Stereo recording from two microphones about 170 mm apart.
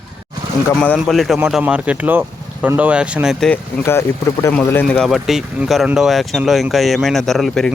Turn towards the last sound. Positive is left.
turn(degrees=0)  # may be behind; listen again after turning